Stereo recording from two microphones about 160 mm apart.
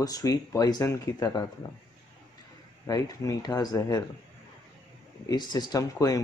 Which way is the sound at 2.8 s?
20° left (ahead or behind).